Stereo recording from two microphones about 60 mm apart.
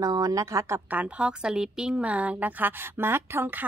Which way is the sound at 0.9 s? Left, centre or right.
Right.